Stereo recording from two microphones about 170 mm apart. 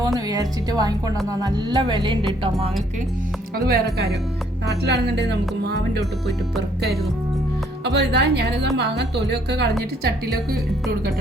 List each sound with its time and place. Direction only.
0.3 s speech: 20° right (ahead or behind)
3.7 s a woman's voice: 75° right (ahead or behind)
5.3 s music: 75° right (ahead or behind)
7.9 s a woman's voice: 80° right
10.0 s a woman's voice: 65° right (ahead or behind)